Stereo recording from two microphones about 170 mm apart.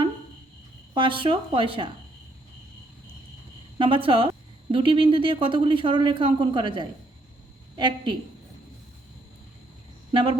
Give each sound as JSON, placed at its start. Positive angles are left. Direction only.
{"t": 0.9, "sound": "speech", "side_deg": -30}
{"t": 3.8, "sound": "speech", "side_deg": -30}
{"t": 10.1, "sound": "speech", "side_deg": -30}